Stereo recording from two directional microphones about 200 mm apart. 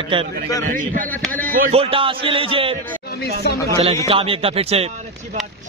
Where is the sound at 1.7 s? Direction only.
30° right (ahead or behind).